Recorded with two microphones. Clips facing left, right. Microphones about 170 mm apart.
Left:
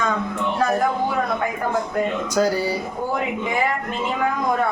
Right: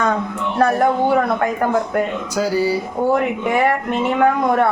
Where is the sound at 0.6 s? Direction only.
65° right (ahead or behind).